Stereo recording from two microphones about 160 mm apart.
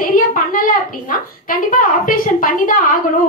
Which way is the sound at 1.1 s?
55° left (ahead or behind).